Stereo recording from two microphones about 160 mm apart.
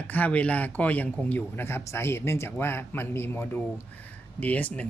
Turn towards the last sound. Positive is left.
turn(degrees=10)  # may be behind; listen again after turning